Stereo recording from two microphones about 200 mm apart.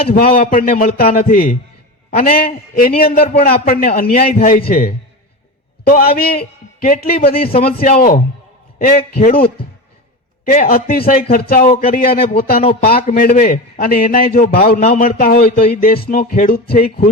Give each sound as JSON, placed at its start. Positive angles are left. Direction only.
{"t": 0.1, "sound": "music", "side_deg": 45}
{"t": 2.0, "sound": "a man's voice", "side_deg": 45}
{"t": 2.5, "sound": "music", "side_deg": 45}
{"t": 5.9, "sound": "music", "side_deg": 50}
{"t": 7.3, "sound": "a man's voice", "side_deg": 30}
{"t": 7.6, "sound": "music", "side_deg": 45}
{"t": 10.5, "sound": "music", "side_deg": 45}
{"t": 14.8, "sound": "a man's voice", "side_deg": 30}
{"t": 15.0, "sound": "music", "side_deg": 45}